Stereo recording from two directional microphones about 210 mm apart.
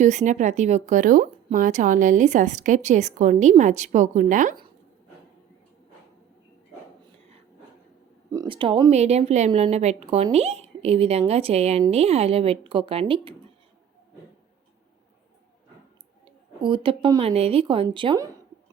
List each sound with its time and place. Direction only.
0.0 s speech: 35° right (ahead or behind)
8.3 s a woman's voice: 20° right (ahead or behind)
16.2 s speech: 25° right (ahead or behind)